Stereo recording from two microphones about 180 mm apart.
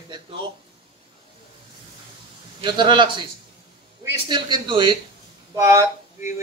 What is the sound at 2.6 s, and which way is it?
A man's voice, 25° right (ahead or behind).